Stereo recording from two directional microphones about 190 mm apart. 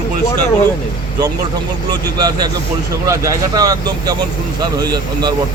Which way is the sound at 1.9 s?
20° right (ahead or behind).